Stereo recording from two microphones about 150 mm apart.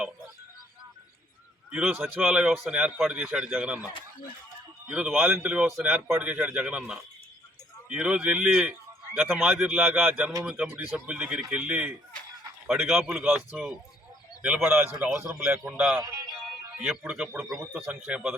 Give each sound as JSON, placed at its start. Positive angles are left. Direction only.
{"t": 1.7, "sound": "speech", "side_deg": -10}
{"t": 4.9, "sound": "speech", "side_deg": -5}
{"t": 16.0, "sound": "speech", "side_deg": -20}
{"t": 16.7, "sound": "speech", "side_deg": -5}